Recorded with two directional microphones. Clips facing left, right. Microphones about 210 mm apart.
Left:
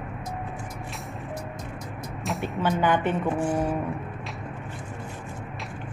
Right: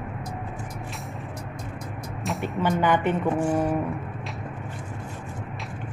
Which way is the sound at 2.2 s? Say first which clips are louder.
Right 1 dB; centre (ahead or behind).